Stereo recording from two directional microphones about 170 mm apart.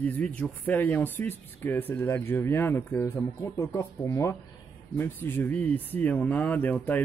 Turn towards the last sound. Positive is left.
turn(degrees=10)  # may be behind; listen again after turning